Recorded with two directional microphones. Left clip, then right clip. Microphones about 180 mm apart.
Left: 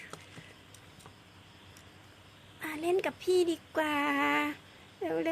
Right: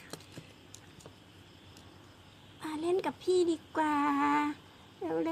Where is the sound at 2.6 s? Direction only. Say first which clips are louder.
Left 1 dB; 15° left (ahead or behind).